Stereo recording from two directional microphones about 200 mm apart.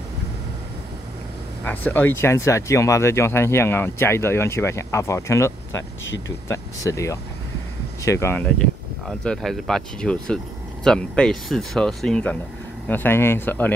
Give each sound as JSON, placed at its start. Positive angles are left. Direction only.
{"t": 1.6, "sound": "speech", "side_deg": 10}
{"t": 5.8, "sound": "speech", "side_deg": 65}
{"t": 6.5, "sound": "speech", "side_deg": 15}